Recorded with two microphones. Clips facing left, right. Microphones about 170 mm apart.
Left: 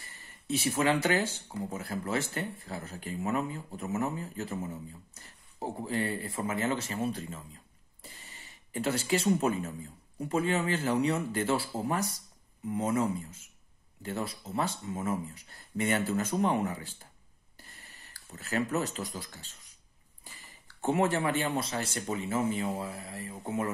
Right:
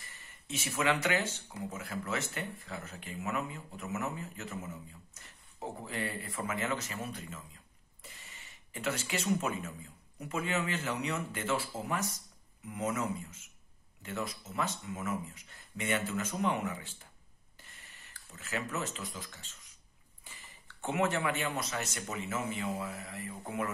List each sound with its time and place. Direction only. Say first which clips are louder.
0.0 s speech: left 2 dB; 35° left (ahead or behind)
17.6 s a sound: left 3 dB; 35° left (ahead or behind)
20.6 s speech: left 4 dB; 35° left (ahead or behind)